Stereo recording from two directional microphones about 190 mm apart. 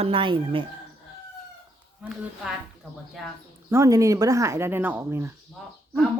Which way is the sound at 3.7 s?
15° right (ahead or behind).